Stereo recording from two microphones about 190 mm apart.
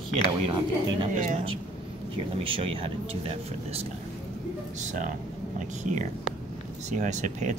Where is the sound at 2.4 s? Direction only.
30° right (ahead or behind).